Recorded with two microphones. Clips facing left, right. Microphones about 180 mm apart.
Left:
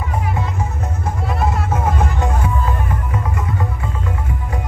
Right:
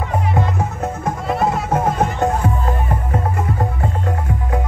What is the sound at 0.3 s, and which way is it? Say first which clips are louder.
Music: right 3 dB; 60° right (ahead or behind).